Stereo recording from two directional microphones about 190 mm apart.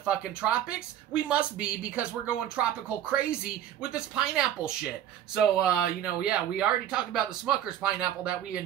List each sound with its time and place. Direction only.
0.0 s speech: 5° right (ahead or behind)